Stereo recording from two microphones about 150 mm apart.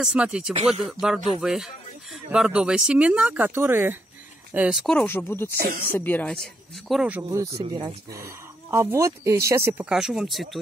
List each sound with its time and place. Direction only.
0.0 s speech: 5° right (ahead or behind)
4.8 s speech: 10° left (ahead or behind)
5.5 s speech: 80° right
5.9 s speech: 15° left (ahead or behind); by 9.8 s 20° right (ahead or behind)
9.8 s speech: 5° right (ahead or behind)